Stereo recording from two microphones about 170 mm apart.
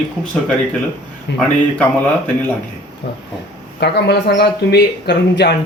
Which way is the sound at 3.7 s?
75° left (ahead or behind).